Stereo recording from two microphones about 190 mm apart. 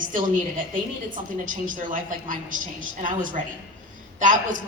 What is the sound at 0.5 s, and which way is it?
A woman's voice, 45° right (ahead or behind).